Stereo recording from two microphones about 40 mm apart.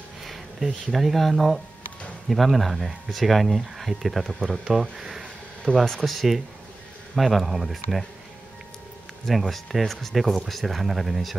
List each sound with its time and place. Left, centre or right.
0.2 s a sound: centre
0.9 s speech: centre
4.6 s speech: centre
5.7 s speech: centre
6.0 s speech: centre
9.4 s speech: centre